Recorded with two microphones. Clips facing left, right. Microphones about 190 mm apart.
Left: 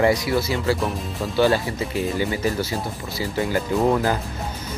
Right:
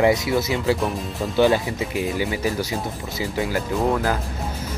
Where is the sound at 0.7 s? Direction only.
Centre (ahead or behind).